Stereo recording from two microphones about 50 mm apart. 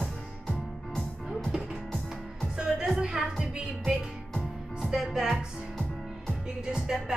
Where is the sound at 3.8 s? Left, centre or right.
Centre.